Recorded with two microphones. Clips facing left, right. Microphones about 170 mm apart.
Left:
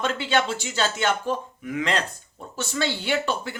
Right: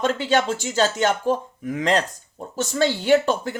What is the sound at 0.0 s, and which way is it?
Speech, 40° right (ahead or behind).